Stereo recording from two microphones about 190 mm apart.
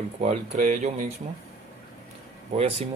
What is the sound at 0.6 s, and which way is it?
Speech, 45° right (ahead or behind).